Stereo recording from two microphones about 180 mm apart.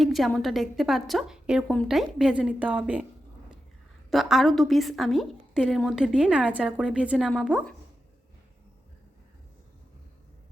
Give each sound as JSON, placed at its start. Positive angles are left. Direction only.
{"t": 0.0, "sound": "a woman's voice", "side_deg": 0}
{"t": 4.1, "sound": "a woman's voice", "side_deg": 0}